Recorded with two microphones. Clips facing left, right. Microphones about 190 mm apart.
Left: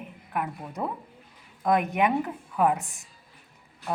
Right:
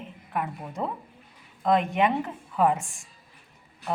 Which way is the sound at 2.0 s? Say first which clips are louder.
Even; centre (ahead or behind).